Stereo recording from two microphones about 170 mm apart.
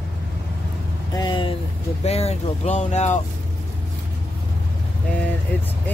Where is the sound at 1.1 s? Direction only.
25° left (ahead or behind).